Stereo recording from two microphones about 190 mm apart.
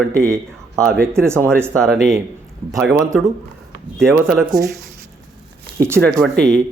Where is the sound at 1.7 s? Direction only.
Centre (ahead or behind).